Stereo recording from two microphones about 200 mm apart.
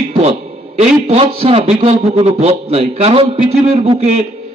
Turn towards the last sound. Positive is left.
turn(degrees=-30)  # may be behind; listen again after turning